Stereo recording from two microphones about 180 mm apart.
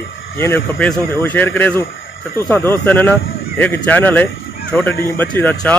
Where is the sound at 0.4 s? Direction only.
10° left (ahead or behind).